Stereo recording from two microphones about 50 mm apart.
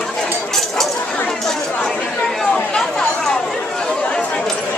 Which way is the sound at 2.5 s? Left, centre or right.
Centre.